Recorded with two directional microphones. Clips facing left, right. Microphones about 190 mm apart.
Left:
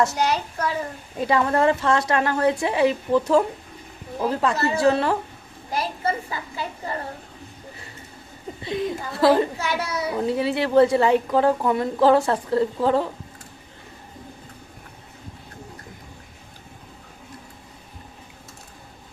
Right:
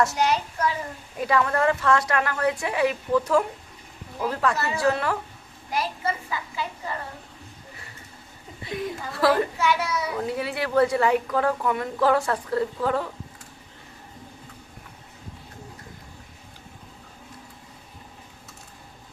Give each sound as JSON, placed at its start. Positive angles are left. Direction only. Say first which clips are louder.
{"t": 0.2, "sound": "a woman's voice", "louder": "even", "side_deg": 35}
{"t": 6.3, "sound": "a woman's voice", "louder": "even", "side_deg": 35}
{"t": 8.6, "sound": "a child's voice", "louder": "left 4 dB", "side_deg": 25}
{"t": 9.6, "sound": "a child's voice", "louder": "right 2 dB", "side_deg": 35}